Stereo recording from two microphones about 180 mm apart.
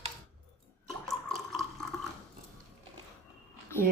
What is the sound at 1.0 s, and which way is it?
Water, centre (ahead or behind).